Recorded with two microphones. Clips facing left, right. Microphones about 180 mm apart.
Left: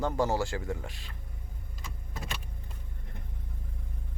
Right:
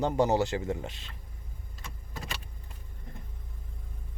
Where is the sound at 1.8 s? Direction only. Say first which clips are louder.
Even; centre (ahead or behind).